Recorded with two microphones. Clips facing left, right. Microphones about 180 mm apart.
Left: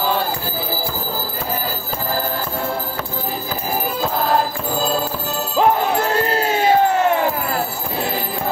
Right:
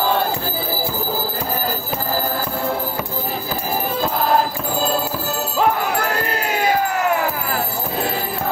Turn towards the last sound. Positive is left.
turn(degrees=25)  # may be behind; listen again after turning